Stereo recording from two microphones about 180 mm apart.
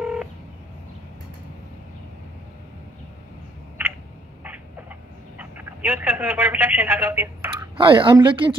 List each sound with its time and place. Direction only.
0.0 s telephone dialing: 5° right (ahead or behind)
5.4 s speech: 10° right (ahead or behind)
7.7 s a woman's voice: 30° right (ahead or behind)